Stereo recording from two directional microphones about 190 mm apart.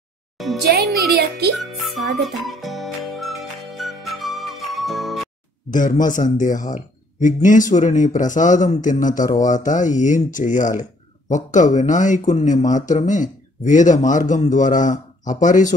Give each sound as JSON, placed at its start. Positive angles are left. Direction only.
{"t": 0.7, "sound": "speech", "side_deg": -55}
{"t": 1.6, "sound": "music", "side_deg": 0}
{"t": 5.7, "sound": "speech", "side_deg": 40}